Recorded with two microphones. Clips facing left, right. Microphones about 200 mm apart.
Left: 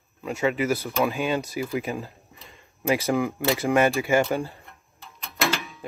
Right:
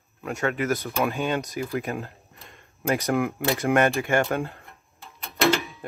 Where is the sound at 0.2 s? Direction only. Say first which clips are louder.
Left 2 dB; centre (ahead or behind).